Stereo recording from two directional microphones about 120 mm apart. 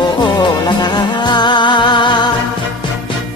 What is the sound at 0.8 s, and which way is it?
Music, 35° left (ahead or behind).